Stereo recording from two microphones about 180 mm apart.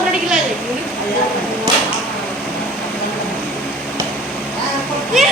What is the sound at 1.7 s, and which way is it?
Arrow, 25° right (ahead or behind).